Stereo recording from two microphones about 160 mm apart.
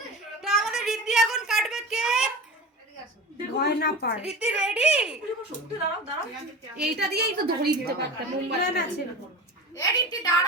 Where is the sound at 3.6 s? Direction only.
90° left.